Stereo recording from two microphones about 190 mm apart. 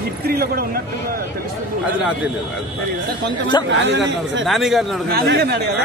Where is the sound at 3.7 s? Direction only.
70° right (ahead or behind).